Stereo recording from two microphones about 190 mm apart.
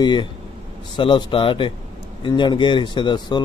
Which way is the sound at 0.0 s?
25° left (ahead or behind).